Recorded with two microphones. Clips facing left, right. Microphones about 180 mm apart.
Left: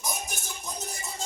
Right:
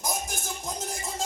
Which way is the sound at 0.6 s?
90° right.